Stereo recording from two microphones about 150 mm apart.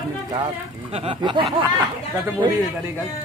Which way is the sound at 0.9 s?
40° right (ahead or behind).